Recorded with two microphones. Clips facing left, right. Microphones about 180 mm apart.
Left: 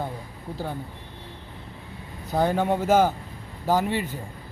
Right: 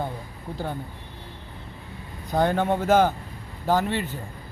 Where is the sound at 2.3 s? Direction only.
10° left (ahead or behind).